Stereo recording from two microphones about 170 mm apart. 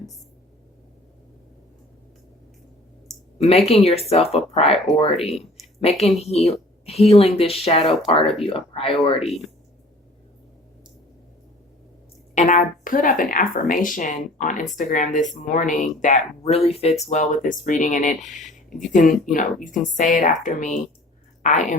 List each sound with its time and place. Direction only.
3.3 s speech: 35° left (ahead or behind)
12.3 s speech: 45° left (ahead or behind)
19.2 s speech: 50° left (ahead or behind)